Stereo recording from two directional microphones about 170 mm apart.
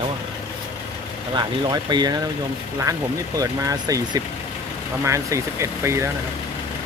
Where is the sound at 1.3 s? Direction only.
25° right (ahead or behind).